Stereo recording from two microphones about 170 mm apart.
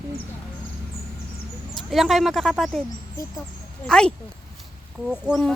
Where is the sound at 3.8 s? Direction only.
5° left (ahead or behind).